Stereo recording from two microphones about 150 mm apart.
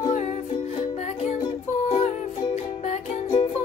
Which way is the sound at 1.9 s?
45° left (ahead or behind).